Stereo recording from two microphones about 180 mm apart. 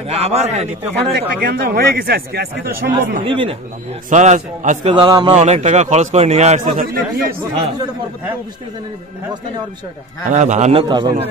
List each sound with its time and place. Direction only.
0.1 s a man's voice: 35° right (ahead or behind)
1.1 s a man's voice: 65° right (ahead or behind)
3.3 s a man's voice: 30° right (ahead or behind)
4.1 s a man's voice: 40° right (ahead or behind)
4.9 s a man's voice: 25° right (ahead or behind)
5.3 s a man's voice: 35° right (ahead or behind)
6.8 s a man's voice: 55° right (ahead or behind)
10.3 s a man's voice: 40° right (ahead or behind)
10.8 s a man's voice: 25° right (ahead or behind)